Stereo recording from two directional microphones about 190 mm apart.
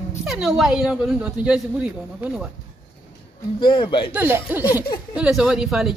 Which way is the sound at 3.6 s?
25° left (ahead or behind).